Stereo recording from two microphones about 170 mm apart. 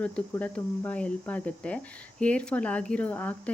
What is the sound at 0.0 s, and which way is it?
Speech, 10° left (ahead or behind).